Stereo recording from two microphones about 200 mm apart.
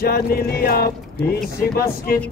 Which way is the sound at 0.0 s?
50° left (ahead or behind).